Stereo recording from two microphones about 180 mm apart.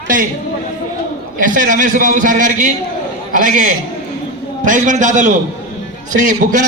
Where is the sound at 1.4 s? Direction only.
50° right (ahead or behind).